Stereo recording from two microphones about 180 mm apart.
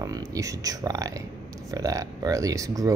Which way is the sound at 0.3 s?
20° right (ahead or behind).